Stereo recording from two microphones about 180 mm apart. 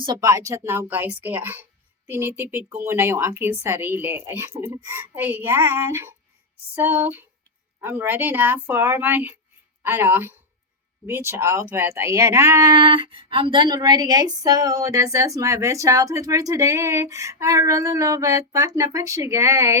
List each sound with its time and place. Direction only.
0.0 s speech: 20° right (ahead or behind)